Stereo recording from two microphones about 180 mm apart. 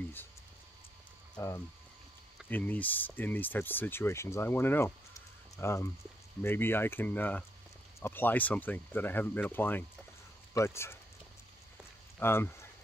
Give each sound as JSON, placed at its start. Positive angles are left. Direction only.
{"t": 1.3, "sound": "speech", "side_deg": 15}
{"t": 12.2, "sound": "speech", "side_deg": 15}